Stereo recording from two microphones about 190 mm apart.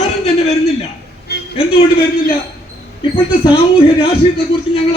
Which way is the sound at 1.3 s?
55° left (ahead or behind).